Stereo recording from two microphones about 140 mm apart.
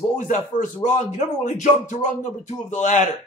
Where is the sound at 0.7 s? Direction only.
60° left (ahead or behind).